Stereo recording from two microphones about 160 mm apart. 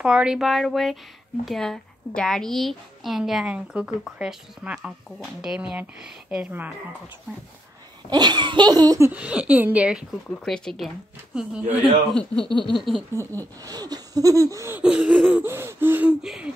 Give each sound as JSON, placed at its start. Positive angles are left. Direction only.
{"t": 0.0, "sound": "a woman's voice", "side_deg": -5}
{"t": 8.1, "sound": "a sound", "side_deg": -25}
{"t": 9.1, "sound": "a woman's voice", "side_deg": -10}
{"t": 12.1, "sound": "a woman's voice", "side_deg": 5}
{"t": 12.4, "sound": "a sound", "side_deg": -30}
{"t": 12.7, "sound": "a woman's voice", "side_deg": 0}
{"t": 13.2, "sound": "speech", "side_deg": 15}
{"t": 13.7, "sound": "a sound", "side_deg": -25}
{"t": 14.8, "sound": "a woman's voice", "side_deg": -10}